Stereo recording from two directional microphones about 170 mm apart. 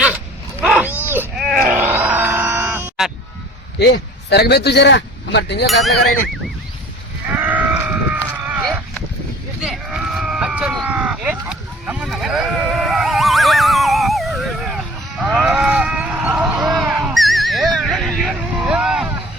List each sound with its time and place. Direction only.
0.6 s wild animals: 5° right (ahead or behind)
1.4 s groan: centre (ahead or behind)
1.7 s grunt: 10° right (ahead or behind)
3.8 s a man's voice: 75° left (ahead or behind)
7.3 s sheep: 10° right (ahead or behind)
9.6 s a sound: 5° right (ahead or behind)
15.2 s sheep: 5° right (ahead or behind)